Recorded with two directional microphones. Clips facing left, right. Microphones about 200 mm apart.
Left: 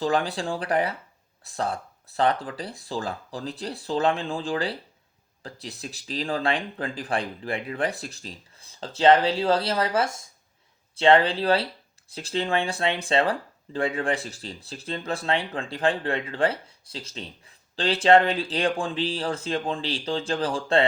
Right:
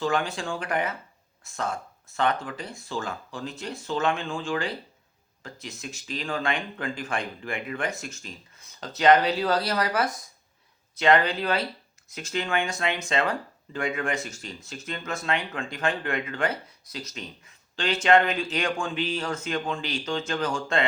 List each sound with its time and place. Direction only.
0.0 s speech: 35° left (ahead or behind)